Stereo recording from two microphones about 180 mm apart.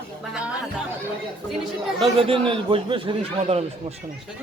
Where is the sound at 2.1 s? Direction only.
30° right (ahead or behind).